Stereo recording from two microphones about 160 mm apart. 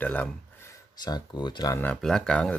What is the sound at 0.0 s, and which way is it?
Speech, 10° left (ahead or behind).